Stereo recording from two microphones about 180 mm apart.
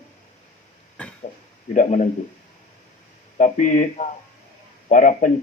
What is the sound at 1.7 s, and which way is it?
Speech, 45° left (ahead or behind).